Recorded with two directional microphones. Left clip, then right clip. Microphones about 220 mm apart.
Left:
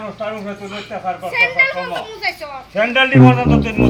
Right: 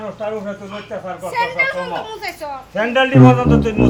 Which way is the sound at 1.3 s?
20° right (ahead or behind).